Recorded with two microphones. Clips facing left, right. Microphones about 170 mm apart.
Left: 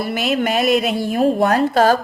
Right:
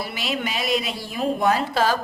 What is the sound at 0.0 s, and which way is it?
A woman's voice, 50° left (ahead or behind).